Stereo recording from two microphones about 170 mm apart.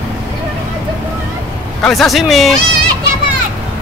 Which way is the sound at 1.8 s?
Centre (ahead or behind).